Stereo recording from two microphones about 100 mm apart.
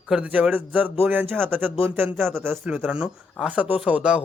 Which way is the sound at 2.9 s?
10° right (ahead or behind).